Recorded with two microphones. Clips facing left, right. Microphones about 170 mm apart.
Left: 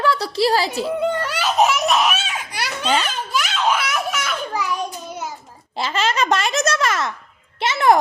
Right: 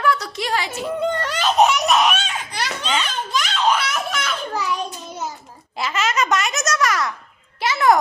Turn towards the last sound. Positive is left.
turn(degrees=25)  # may be behind; listen again after turning